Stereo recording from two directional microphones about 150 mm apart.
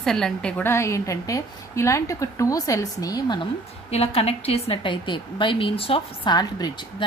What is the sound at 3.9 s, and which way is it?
A woman's voice, 40° left (ahead or behind).